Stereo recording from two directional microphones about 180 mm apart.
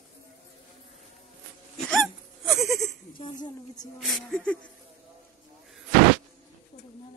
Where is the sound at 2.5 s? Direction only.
15° right (ahead or behind).